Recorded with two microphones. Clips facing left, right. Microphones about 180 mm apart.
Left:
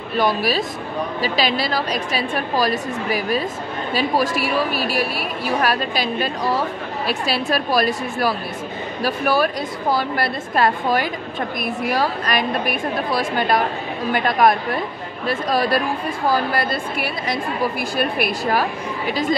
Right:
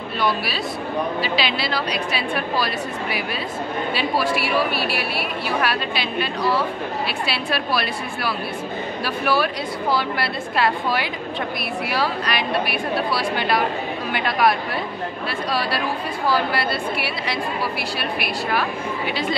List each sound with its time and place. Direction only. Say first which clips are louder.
0.2 s a woman's voice: left 4 dB; 45° left (ahead or behind)